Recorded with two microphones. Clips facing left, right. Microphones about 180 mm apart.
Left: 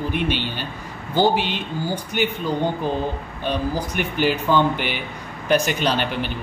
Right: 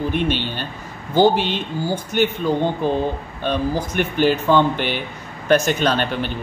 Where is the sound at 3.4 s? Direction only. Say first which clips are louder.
Right 2 dB; 10° left (ahead or behind).